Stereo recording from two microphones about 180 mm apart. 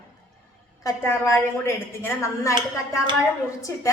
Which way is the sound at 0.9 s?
15° left (ahead or behind).